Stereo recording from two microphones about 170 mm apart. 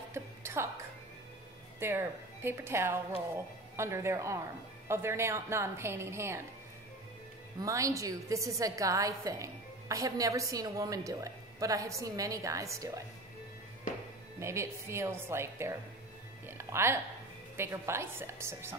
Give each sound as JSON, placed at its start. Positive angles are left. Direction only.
{"t": 0.1, "sound": "music", "side_deg": -15}
{"t": 1.8, "sound": "a woman's voice", "side_deg": -15}
{"t": 7.6, "sound": "a woman's voice", "side_deg": -20}
{"t": 14.4, "sound": "a woman's voice", "side_deg": -15}
{"t": 16.4, "sound": "music", "side_deg": -15}
{"t": 17.6, "sound": "a woman's voice", "side_deg": -15}